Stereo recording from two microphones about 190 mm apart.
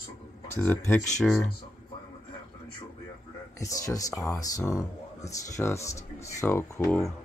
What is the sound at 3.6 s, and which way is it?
Speech, 15° left (ahead or behind).